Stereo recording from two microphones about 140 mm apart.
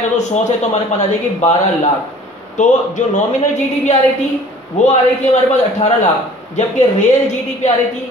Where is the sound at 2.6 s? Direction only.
60° left (ahead or behind).